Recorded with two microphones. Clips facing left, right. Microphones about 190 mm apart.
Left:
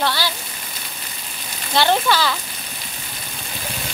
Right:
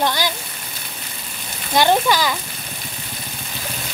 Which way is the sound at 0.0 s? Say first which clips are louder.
Right 2 dB; 15° right (ahead or behind).